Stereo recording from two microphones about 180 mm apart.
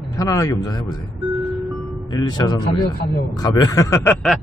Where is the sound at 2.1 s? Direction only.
25° left (ahead or behind).